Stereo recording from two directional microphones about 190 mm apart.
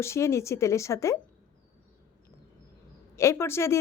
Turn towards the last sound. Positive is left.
turn(degrees=15)  # may be behind; listen again after turning